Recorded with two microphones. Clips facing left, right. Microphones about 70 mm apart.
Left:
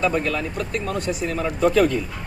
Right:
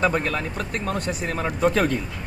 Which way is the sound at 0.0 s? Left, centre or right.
Right.